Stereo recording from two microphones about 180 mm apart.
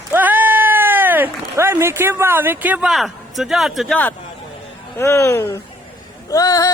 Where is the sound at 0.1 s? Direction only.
10° right (ahead or behind).